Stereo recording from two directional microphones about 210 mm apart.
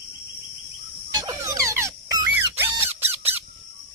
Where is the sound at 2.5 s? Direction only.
10° right (ahead or behind).